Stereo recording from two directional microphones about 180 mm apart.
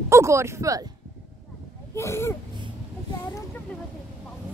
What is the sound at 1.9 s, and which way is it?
Speech, 15° left (ahead or behind).